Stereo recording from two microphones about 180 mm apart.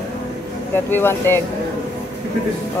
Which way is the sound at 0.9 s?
10° left (ahead or behind).